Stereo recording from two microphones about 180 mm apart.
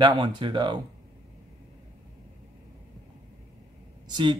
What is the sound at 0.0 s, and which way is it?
Speech, 25° right (ahead or behind).